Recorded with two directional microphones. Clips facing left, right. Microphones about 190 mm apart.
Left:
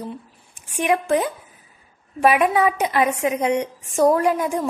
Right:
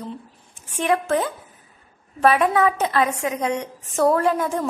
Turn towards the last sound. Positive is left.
turn(degrees=10)  # may be behind; listen again after turning